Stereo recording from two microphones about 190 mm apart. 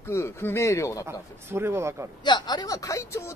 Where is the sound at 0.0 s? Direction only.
15° left (ahead or behind).